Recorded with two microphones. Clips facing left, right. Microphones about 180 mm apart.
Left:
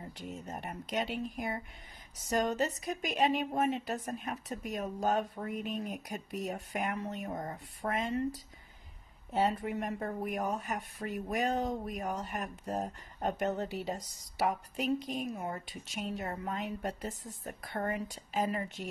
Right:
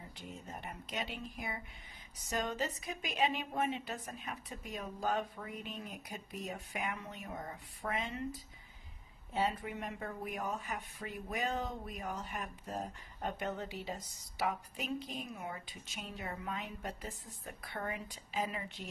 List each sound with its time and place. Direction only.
0.2 s speech: 45° left (ahead or behind)
9.3 s speech: 45° left (ahead or behind)